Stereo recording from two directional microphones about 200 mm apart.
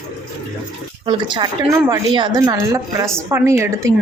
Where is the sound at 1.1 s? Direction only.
25° right (ahead or behind).